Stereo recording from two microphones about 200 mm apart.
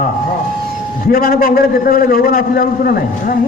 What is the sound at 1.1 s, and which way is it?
A man's voice, 45° left (ahead or behind).